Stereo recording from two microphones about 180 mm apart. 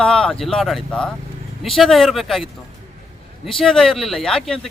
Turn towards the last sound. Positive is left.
turn(degrees=0)  # may be behind; listen again after turning